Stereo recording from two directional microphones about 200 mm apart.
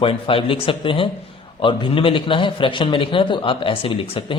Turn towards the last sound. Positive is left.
turn(degrees=25)  # may be behind; listen again after turning